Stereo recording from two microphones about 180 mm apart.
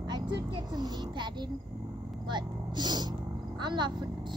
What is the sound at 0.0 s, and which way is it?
A woman's voice, 25° right (ahead or behind).